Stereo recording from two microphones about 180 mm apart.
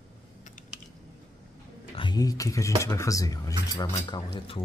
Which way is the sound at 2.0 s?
25° left (ahead or behind).